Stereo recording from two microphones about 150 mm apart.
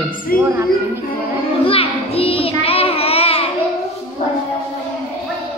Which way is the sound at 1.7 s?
40° left (ahead or behind).